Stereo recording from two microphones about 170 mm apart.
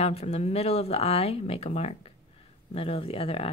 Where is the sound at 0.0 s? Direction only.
35° left (ahead or behind).